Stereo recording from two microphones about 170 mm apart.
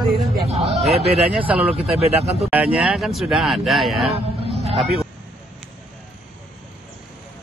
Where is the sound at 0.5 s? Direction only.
40° right (ahead or behind).